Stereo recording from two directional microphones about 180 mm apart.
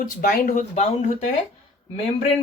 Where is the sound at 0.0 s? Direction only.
50° left (ahead or behind).